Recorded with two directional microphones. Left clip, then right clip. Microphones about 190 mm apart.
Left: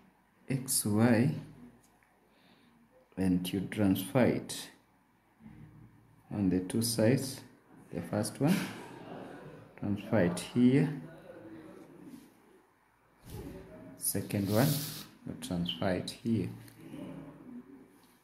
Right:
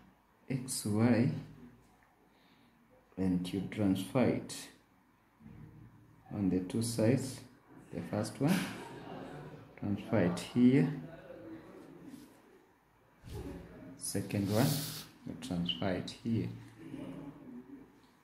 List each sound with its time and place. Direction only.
0.5 s speech: 20° left (ahead or behind)
3.2 s speech: 20° left (ahead or behind)
6.3 s speech: 20° left (ahead or behind)
9.8 s speech: 15° left (ahead or behind)
13.9 s speech: 15° left (ahead or behind)